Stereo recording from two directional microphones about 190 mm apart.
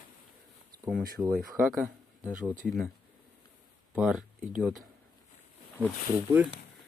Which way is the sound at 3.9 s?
5° right (ahead or behind).